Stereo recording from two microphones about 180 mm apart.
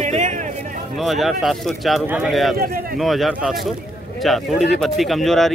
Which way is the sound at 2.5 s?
55° right (ahead or behind).